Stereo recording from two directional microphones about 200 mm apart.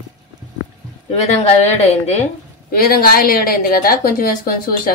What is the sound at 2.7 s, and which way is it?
Speech, 50° left (ahead or behind).